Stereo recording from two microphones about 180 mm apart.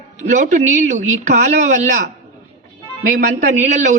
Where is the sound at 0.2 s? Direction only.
40° right (ahead or behind).